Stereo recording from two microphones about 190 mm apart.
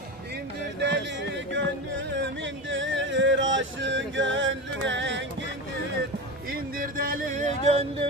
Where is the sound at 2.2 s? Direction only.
75° right (ahead or behind).